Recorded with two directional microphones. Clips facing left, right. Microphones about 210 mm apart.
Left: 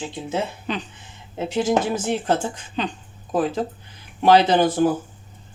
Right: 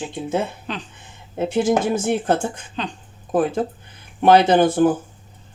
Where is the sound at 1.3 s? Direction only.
50° right (ahead or behind).